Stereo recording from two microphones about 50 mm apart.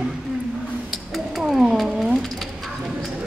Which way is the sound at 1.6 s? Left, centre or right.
Centre.